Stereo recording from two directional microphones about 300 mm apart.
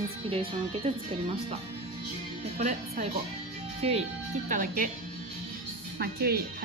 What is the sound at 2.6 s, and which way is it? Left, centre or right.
Speech, right.